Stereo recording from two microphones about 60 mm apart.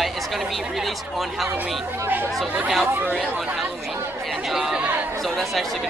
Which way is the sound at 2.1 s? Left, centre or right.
Right.